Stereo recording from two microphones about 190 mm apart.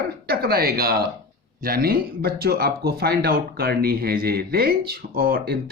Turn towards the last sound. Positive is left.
turn(degrees=-50)  # may be behind; listen again after turning